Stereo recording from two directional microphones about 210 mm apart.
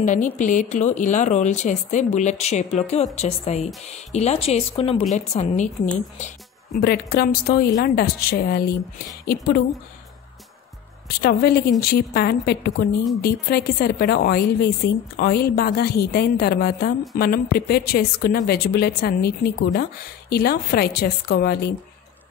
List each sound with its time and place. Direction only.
0.0 s speech: 35° left (ahead or behind)
6.8 s a woman's voice: 50° left (ahead or behind)
11.1 s a woman's voice: 45° left (ahead or behind)